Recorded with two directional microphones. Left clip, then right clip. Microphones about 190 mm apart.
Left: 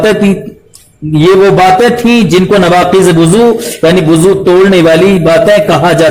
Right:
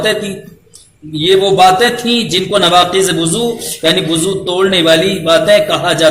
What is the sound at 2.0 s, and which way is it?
A man's voice, 25° left (ahead or behind).